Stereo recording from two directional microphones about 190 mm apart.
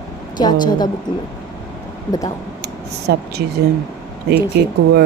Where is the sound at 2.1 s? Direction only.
20° left (ahead or behind).